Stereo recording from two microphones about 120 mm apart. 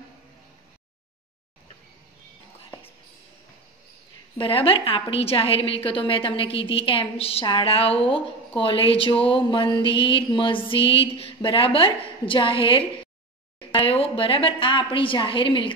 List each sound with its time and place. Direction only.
4.4 s a woman's voice: 50° left (ahead or behind)